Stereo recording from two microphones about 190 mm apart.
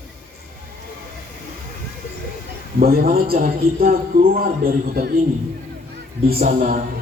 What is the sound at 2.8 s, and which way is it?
A man's voice, 50° right (ahead or behind).